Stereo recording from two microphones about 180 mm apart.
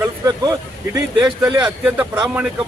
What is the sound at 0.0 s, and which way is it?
Speech, 20° right (ahead or behind).